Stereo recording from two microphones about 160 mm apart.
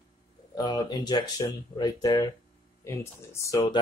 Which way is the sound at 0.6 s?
25° left (ahead or behind).